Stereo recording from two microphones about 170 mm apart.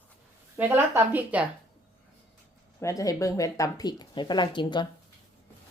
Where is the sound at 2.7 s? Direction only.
20° left (ahead or behind).